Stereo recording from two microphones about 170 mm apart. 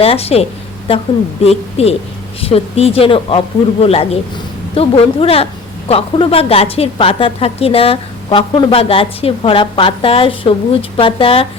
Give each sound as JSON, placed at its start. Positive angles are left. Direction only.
{"t": 0.0, "sound": "a woman's voice", "side_deg": 35}
{"t": 1.5, "sound": "a woman's voice", "side_deg": 35}